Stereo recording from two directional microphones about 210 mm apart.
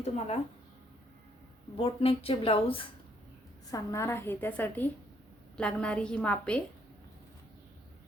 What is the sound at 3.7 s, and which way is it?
A woman's voice, 15° left (ahead or behind).